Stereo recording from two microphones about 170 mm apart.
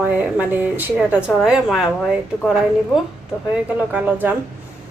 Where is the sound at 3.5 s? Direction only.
10° right (ahead or behind).